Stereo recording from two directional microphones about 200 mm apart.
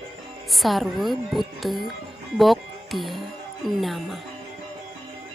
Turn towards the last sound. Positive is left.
turn(degrees=0)  # may be behind; listen again after turning